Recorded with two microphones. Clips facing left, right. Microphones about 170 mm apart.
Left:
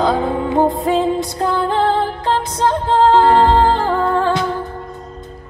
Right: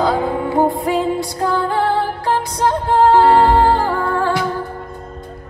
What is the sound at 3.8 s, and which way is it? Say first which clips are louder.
Music: left 2 dB; 20° left (ahead or behind).